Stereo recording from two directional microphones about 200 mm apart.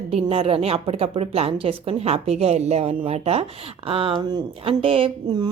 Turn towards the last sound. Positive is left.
turn(degrees=-25)  # may be behind; listen again after turning